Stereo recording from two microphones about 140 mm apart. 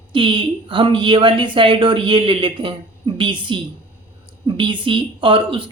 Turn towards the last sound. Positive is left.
turn(degrees=-40)  # may be behind; listen again after turning